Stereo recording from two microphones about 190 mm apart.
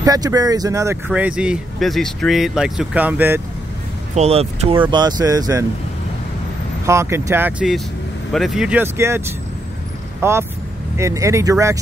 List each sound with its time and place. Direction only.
0.0 s speech: 20° right (ahead or behind)
4.1 s speech: 35° right (ahead or behind)
5.2 s speech: 20° right (ahead or behind)
6.9 s speech: 15° right (ahead or behind)
10.2 s speech: 15° right (ahead or behind)